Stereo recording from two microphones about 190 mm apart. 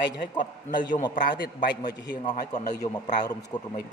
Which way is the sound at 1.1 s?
45° left (ahead or behind).